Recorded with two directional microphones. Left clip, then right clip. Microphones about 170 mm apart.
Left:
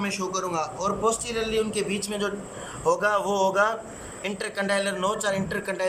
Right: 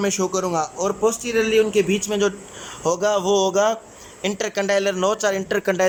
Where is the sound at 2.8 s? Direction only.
30° right (ahead or behind).